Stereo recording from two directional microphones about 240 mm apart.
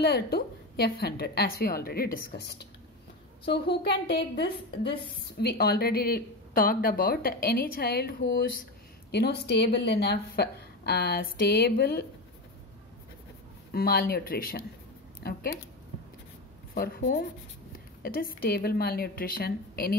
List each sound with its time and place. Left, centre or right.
0.0 s a woman's voice: left
13.7 s a woman's voice: left
16.7 s speech: left